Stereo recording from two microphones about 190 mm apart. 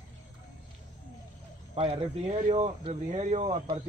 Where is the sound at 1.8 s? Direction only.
30° right (ahead or behind).